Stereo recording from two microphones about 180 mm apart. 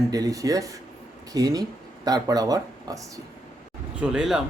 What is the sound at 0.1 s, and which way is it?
Speech, 20° right (ahead or behind).